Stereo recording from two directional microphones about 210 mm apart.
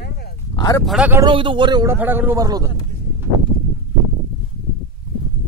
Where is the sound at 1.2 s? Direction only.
25° right (ahead or behind).